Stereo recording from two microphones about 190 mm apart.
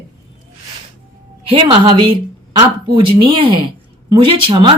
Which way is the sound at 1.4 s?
30° right (ahead or behind).